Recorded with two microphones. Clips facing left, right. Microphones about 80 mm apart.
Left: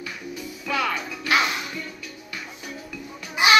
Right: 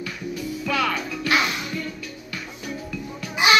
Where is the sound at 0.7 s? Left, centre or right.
Centre.